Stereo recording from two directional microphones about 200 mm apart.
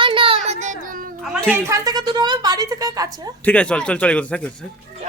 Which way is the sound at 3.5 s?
5° left (ahead or behind).